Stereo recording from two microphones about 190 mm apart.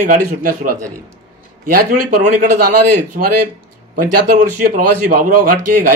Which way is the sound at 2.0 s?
45° right (ahead or behind).